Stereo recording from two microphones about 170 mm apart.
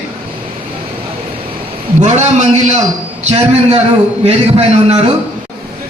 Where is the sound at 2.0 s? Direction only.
45° right (ahead or behind).